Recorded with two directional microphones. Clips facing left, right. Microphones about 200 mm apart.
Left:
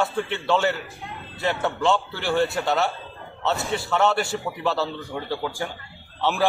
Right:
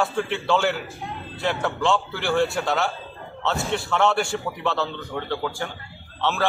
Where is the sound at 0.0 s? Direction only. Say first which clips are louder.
Right 1 dB; centre (ahead or behind).